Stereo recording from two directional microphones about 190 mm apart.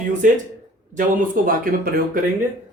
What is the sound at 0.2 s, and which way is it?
Speech, 45° right (ahead or behind).